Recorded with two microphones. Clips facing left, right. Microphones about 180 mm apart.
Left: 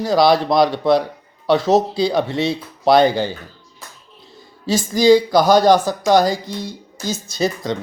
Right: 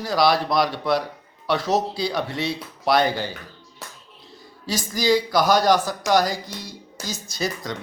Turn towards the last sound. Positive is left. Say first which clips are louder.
# left 7 dB
turn(degrees=25)  # may be behind; listen again after turning